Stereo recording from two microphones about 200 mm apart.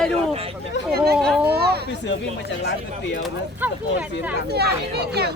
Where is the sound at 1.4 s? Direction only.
55° right (ahead or behind).